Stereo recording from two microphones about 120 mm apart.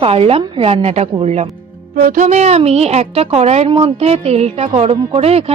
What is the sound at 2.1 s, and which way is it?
A woman's voice, 80° right.